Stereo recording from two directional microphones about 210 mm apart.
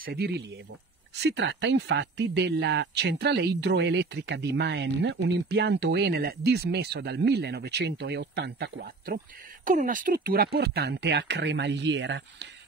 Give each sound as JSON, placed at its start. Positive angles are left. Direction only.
{"t": 0.0, "sound": "speech", "side_deg": -50}